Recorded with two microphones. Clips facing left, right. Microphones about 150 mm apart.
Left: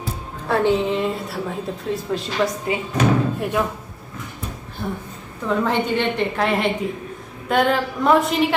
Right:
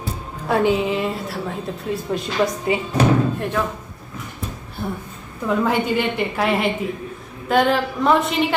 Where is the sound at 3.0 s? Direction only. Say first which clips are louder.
Right 1 dB; 35° right (ahead or behind).